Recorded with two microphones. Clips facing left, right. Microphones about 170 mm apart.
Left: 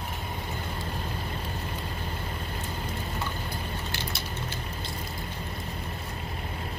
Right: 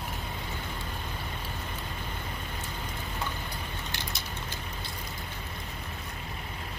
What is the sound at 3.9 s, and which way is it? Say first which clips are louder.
Crushing: left 3 dB; 15° right (ahead or behind).